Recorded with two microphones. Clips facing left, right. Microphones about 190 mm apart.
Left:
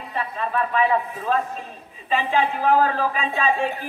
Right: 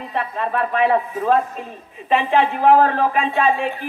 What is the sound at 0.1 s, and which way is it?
Speech, 60° right (ahead or behind).